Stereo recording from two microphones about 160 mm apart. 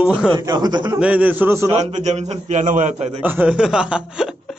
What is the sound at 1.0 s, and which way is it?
Speech, 10° right (ahead or behind).